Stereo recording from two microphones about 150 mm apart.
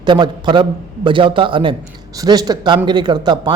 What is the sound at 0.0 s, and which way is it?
A man's voice, 30° right (ahead or behind).